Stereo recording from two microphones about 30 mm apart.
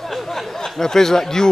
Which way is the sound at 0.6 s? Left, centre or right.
Centre.